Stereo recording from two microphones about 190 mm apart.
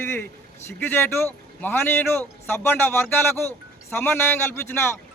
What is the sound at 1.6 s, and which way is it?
Speech, 10° left (ahead or behind).